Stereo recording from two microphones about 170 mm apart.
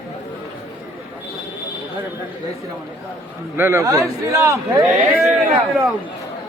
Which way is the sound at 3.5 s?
15° right (ahead or behind).